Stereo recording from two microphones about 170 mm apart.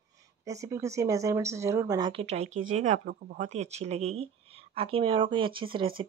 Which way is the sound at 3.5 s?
40° right (ahead or behind).